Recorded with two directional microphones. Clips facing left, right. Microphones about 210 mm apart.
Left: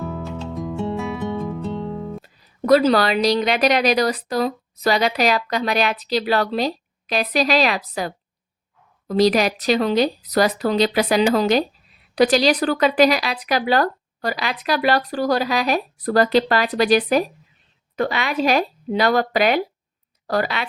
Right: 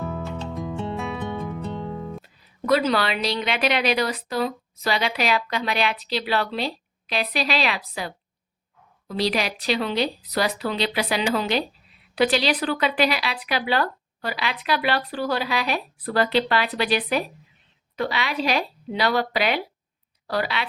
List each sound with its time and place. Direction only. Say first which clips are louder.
0.0 s music: left 2 dB; centre (ahead or behind)
2.6 s a woman's voice: left 6 dB; 40° left (ahead or behind)